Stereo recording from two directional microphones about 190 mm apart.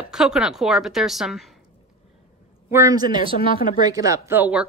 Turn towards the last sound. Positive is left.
turn(degrees=-10)  # may be behind; listen again after turning